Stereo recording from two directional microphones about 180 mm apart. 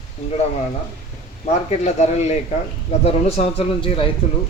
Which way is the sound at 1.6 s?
40° left (ahead or behind).